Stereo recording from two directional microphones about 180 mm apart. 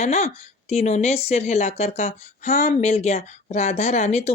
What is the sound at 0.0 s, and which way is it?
A woman's voice, 40° left (ahead or behind).